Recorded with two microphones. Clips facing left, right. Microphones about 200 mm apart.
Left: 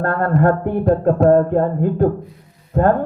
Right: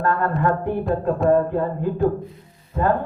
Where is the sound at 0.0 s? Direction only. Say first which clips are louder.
Left 2 dB; 55° left (ahead or behind).